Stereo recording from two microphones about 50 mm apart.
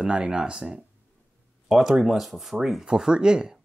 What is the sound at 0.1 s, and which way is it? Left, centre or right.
Speech, right.